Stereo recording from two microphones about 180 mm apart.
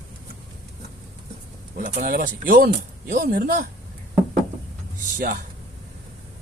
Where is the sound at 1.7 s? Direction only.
50° right (ahead or behind).